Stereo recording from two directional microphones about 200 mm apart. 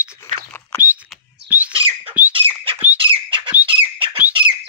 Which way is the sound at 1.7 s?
25° right (ahead or behind).